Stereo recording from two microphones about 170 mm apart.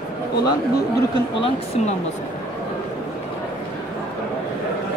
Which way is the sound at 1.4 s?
35° left (ahead or behind).